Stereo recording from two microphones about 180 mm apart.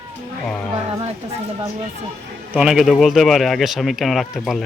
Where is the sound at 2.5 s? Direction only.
5° right (ahead or behind).